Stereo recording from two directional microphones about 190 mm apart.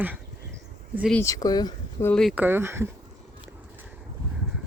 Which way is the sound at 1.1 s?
15° left (ahead or behind).